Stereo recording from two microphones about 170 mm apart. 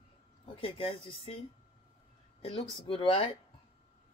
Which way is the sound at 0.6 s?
30° left (ahead or behind).